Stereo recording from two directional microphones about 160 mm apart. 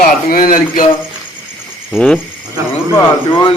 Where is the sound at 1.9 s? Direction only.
5° left (ahead or behind).